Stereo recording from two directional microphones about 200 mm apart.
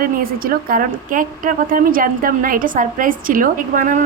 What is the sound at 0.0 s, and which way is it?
Speech, 45° right (ahead or behind).